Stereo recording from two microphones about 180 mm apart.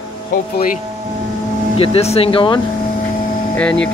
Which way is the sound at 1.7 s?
35° left (ahead or behind).